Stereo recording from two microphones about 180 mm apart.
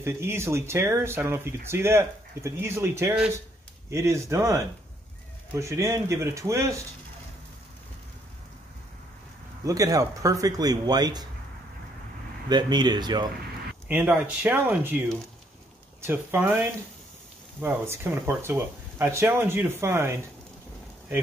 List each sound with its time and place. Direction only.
0.0 s speech: 15° right (ahead or behind)
9.7 s speech: 20° right (ahead or behind)
12.4 s speech: 25° right (ahead or behind)
13.8 s speech: 10° right (ahead or behind)
16.0 s speech: 10° right (ahead or behind)